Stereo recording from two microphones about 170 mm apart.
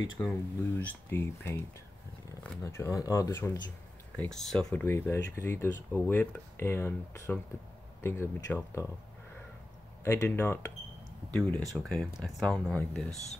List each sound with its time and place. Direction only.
0.2 s speech: 10° left (ahead or behind)
2.6 s speech: 15° left (ahead or behind)
4.2 s speech: centre (ahead or behind)
10.0 s speech: 10° left (ahead or behind)